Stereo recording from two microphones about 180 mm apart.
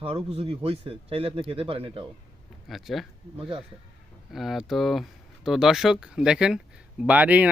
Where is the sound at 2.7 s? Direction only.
Centre (ahead or behind).